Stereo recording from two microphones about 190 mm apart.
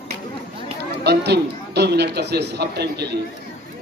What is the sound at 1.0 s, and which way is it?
A man's voice, 60° right (ahead or behind).